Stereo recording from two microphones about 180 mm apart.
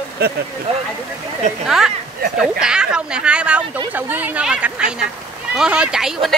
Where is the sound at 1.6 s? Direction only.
5° right (ahead or behind).